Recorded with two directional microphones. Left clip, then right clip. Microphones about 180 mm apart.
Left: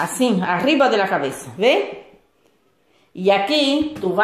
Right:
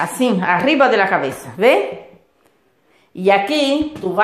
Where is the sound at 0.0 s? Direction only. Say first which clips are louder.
Right 2 dB; 5° right (ahead or behind).